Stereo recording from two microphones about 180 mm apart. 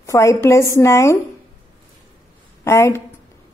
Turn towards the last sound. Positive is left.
turn(degrees=15)  # may be behind; listen again after turning